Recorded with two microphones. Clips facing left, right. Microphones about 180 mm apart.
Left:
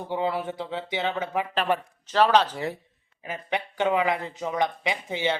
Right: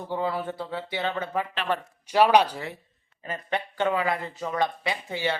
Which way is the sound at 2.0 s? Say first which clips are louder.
Right 1 dB; 10° right (ahead or behind).